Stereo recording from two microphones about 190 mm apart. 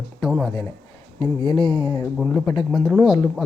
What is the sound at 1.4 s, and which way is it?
Speech, 25° left (ahead or behind).